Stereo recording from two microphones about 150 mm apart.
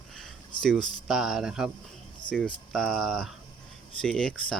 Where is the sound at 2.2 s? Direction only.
30° left (ahead or behind).